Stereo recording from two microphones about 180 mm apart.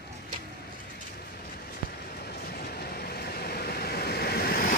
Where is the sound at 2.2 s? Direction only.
60° left (ahead or behind).